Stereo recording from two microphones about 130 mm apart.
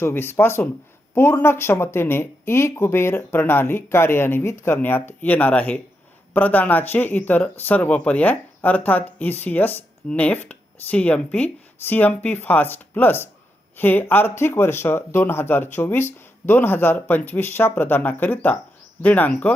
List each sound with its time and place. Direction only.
0.0 s speech: 15° left (ahead or behind)